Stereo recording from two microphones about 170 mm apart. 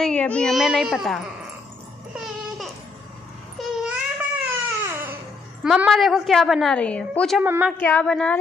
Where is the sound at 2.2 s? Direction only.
Centre (ahead or behind).